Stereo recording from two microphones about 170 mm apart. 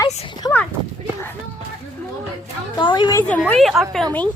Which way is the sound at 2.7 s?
25° left (ahead or behind).